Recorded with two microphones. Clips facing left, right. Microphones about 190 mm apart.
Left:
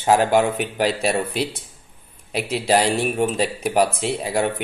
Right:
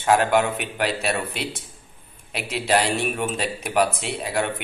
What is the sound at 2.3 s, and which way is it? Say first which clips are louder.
Speech: left 3 dB; 35° left (ahead or behind).